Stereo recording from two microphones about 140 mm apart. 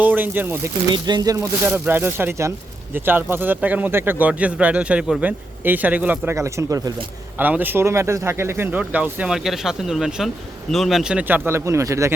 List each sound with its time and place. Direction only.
0.0 s speech: 15° right (ahead or behind)
0.9 s speech: 30° right (ahead or behind)
1.4 s speech: 15° right (ahead or behind)
7.3 s speech: 15° right (ahead or behind)